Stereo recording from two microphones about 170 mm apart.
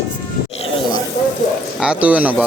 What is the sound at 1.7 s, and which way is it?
Speech, 5° right (ahead or behind).